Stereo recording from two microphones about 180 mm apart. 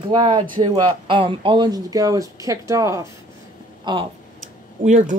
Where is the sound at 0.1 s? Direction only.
25° right (ahead or behind).